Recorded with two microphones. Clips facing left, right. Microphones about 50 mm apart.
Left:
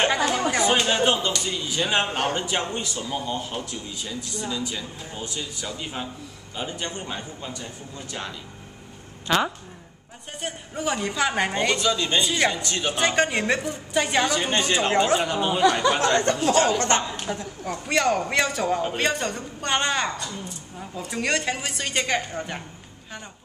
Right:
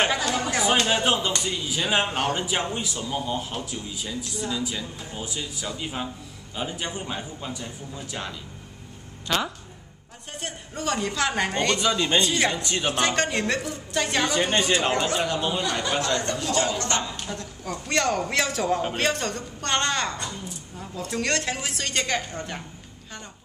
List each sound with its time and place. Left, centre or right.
0.2 s chatter: centre
0.5 s a sound: centre
1.4 s speech: centre
9.3 s speech: centre
10.4 s speech: centre
11.8 s speech: centre
12.2 s a woman's voice: centre
14.3 s a woman's voice: centre
16.0 s speech: left
17.1 s a woman's voice: centre